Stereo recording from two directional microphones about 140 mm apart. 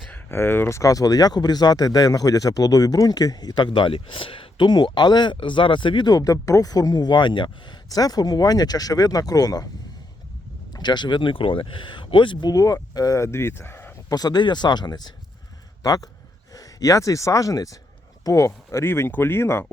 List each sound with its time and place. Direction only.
0.1 s speech: 15° left (ahead or behind)
10.7 s speech: 30° left (ahead or behind)
14.1 s a man's voice: 30° left (ahead or behind)